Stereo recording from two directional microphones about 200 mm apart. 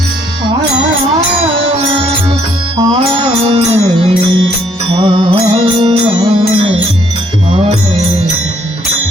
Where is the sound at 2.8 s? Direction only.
25° right (ahead or behind).